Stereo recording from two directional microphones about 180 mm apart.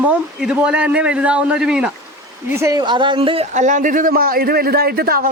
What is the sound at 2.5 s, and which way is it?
Speech, 15° right (ahead or behind).